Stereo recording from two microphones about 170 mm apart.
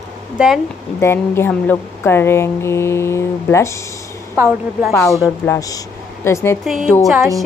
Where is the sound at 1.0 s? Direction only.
15° left (ahead or behind).